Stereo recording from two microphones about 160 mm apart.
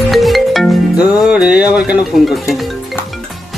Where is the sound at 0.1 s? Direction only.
Centre (ahead or behind).